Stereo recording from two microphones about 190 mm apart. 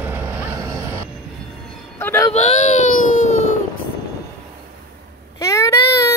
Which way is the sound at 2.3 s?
35° left (ahead or behind).